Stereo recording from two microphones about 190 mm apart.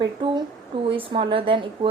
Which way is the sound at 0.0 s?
25° right (ahead or behind).